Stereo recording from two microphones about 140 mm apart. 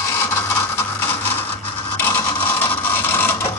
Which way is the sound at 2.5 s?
15° left (ahead or behind).